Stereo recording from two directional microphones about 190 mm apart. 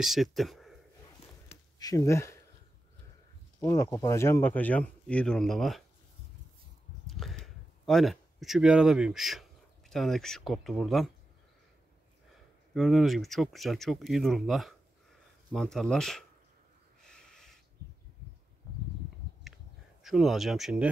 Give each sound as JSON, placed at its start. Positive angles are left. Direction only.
{"t": 0.0, "sound": "speech", "side_deg": 0}
{"t": 1.5, "sound": "a sound", "side_deg": 20}
{"t": 3.6, "sound": "speech", "side_deg": 15}
{"t": 7.1, "sound": "speech", "side_deg": 0}
{"t": 12.7, "sound": "speech", "side_deg": 0}
{"t": 17.0, "sound": "snort", "side_deg": 5}
{"t": 20.0, "sound": "speech", "side_deg": 0}